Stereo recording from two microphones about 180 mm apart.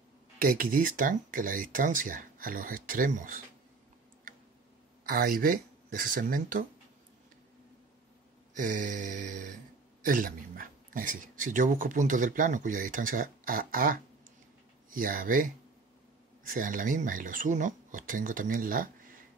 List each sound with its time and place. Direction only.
0.4 s speech: 50° right (ahead or behind)
5.0 s speech: 55° right (ahead or behind)
8.5 s speech: 45° right (ahead or behind)